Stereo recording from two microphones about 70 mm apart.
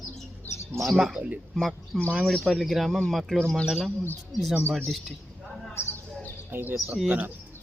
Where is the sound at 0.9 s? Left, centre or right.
Centre.